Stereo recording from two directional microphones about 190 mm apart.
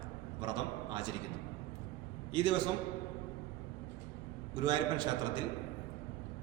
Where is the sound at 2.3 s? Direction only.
25° right (ahead or behind).